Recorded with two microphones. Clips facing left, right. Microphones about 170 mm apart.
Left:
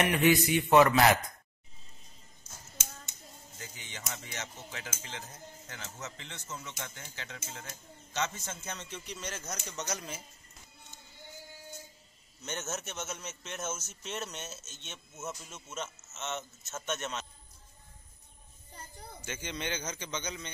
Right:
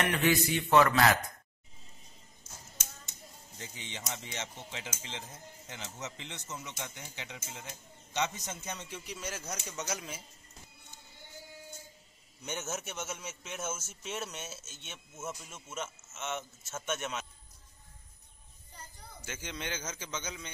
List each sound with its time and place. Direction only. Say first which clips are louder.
0.0 s a man's voice: left 3 dB; 15° left (ahead or behind)
3.5 s speech: right 3 dB; 25° right (ahead or behind); by 10.2 s 5° right (ahead or behind)
12.4 s speech: even; 10° right (ahead or behind)
19.2 s a man's voice: left 2 dB; 5° right (ahead or behind)